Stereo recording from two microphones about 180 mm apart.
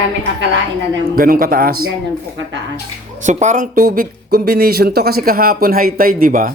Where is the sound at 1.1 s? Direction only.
55° right (ahead or behind).